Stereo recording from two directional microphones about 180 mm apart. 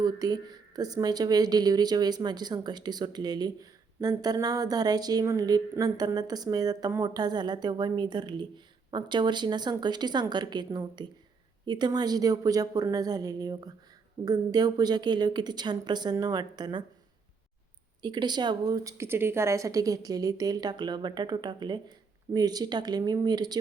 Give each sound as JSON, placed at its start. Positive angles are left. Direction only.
{"t": 0.0, "sound": "speech", "side_deg": -20}
{"t": 18.0, "sound": "speech", "side_deg": -25}